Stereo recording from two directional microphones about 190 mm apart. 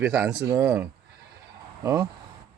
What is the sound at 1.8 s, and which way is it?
Speech, 20° right (ahead or behind).